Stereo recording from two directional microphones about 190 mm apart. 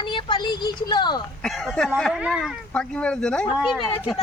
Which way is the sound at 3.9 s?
25° left (ahead or behind).